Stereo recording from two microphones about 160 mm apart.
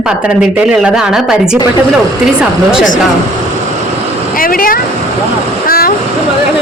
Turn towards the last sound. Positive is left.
turn(degrees=65)  # may be behind; listen again after turning